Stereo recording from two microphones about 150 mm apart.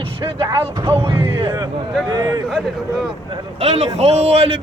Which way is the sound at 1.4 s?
30° right (ahead or behind).